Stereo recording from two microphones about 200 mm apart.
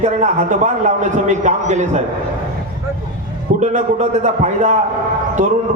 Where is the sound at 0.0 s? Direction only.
35° right (ahead or behind).